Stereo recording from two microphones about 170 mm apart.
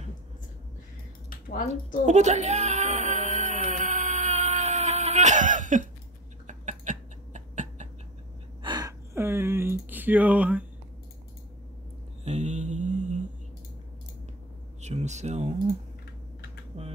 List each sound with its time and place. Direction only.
2.0 s a sound: 45° right (ahead or behind)
8.6 s speech: 20° right (ahead or behind)
12.3 s mantra: 40° right (ahead or behind)
14.8 s speech: 40° right (ahead or behind)
16.7 s typing: 40° right (ahead or behind)